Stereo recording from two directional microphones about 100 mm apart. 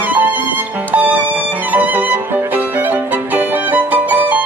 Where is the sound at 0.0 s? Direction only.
15° right (ahead or behind).